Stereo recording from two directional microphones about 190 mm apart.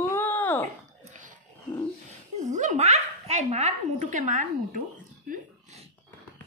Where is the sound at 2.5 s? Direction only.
40° right (ahead or behind).